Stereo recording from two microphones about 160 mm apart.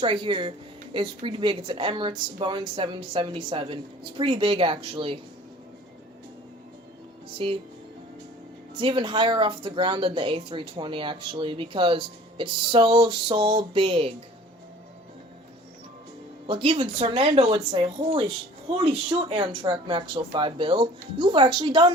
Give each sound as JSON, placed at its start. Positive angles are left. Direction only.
{"t": 0.0, "sound": "speech", "side_deg": -30}
{"t": 7.4, "sound": "speech", "side_deg": -35}
{"t": 8.8, "sound": "speech", "side_deg": -30}
{"t": 16.5, "sound": "speech", "side_deg": -35}